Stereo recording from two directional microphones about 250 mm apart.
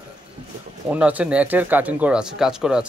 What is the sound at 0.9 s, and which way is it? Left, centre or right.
Speech, centre.